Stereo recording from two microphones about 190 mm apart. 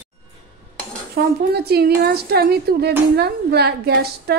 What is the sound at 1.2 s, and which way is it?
Speech, 60° right (ahead or behind).